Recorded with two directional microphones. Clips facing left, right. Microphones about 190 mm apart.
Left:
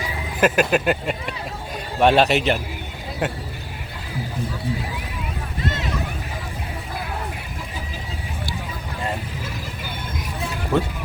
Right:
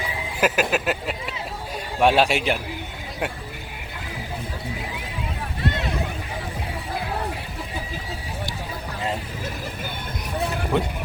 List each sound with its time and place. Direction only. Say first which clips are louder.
0.3 s a man's voice: left 4 dB; 5° right (ahead or behind)
10.7 s a man's voice: left 3 dB; 15° right (ahead or behind)